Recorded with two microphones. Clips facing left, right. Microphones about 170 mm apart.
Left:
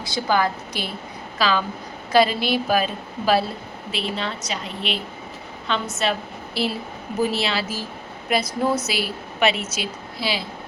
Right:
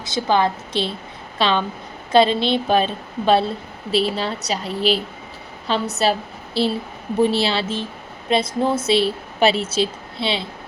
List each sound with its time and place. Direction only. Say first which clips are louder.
0.0 s a woman's voice: right 3 dB; 20° right (ahead or behind)
6.0 s a woman's voice: right 4 dB; 30° right (ahead or behind)